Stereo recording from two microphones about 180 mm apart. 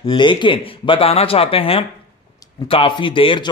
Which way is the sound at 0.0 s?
25° left (ahead or behind).